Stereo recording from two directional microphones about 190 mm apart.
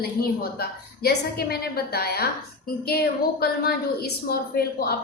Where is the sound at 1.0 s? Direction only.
55° left (ahead or behind).